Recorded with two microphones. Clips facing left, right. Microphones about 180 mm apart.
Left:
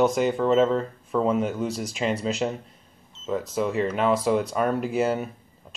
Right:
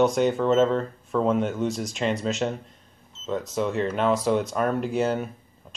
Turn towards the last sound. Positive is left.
turn(degrees=5)  # may be behind; listen again after turning